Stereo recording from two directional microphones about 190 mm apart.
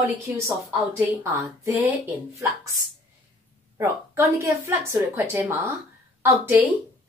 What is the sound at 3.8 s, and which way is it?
Speech, 15° right (ahead or behind).